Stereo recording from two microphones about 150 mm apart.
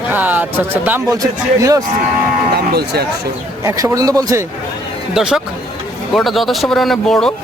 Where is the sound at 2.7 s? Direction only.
90° right.